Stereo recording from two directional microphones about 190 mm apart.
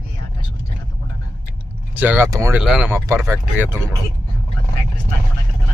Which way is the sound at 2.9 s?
15° right (ahead or behind).